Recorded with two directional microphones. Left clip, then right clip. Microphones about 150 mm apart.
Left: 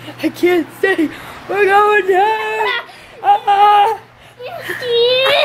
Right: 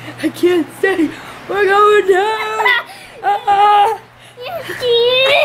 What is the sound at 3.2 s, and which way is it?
Speech, 5° right (ahead or behind).